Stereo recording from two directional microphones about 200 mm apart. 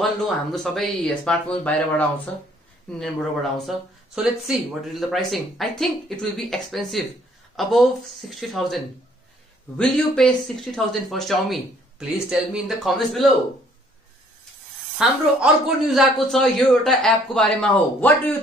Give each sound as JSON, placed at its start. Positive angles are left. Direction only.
{"t": 0.2, "sound": "speech", "side_deg": 0}
{"t": 3.5, "sound": "speech", "side_deg": 0}
{"t": 15.0, "sound": "speech", "side_deg": -5}